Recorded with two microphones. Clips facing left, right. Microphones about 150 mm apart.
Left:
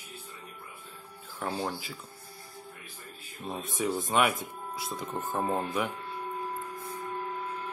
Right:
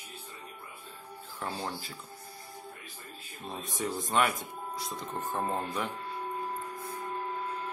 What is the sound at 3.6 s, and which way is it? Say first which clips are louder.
Speech: left 4 dB; centre (ahead or behind).